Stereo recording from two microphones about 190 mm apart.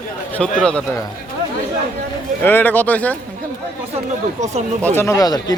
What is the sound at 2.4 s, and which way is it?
Speech, 10° left (ahead or behind).